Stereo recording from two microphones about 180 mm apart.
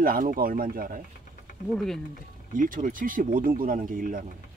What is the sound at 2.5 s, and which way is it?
Speech, 50° right (ahead or behind).